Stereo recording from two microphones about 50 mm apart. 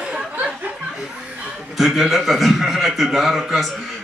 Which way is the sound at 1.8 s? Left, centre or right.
Centre.